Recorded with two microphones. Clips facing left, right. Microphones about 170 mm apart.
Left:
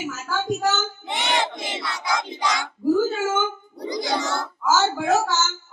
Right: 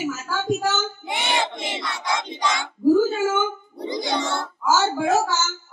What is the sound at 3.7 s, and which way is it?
Music, 25° right (ahead or behind).